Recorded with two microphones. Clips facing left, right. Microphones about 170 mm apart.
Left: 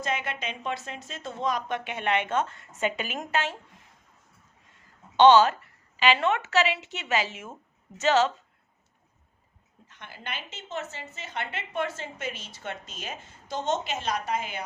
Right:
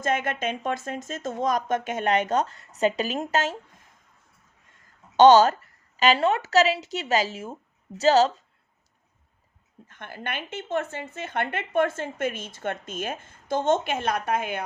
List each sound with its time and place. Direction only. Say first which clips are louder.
0.0 s speech: right 5 dB; 50° right (ahead or behind)
5.1 s speech: right 3 dB; 40° right (ahead or behind)
9.8 s speech: right 6 dB; 50° right (ahead or behind)